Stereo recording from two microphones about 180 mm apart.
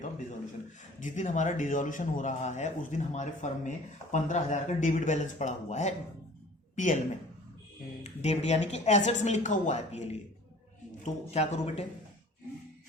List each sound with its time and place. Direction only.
0.9 s a woman's voice: 40° left (ahead or behind)
8.0 s speech: 40° left (ahead or behind)